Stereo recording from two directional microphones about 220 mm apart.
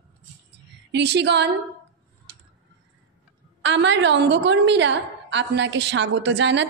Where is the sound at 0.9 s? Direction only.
50° right (ahead or behind).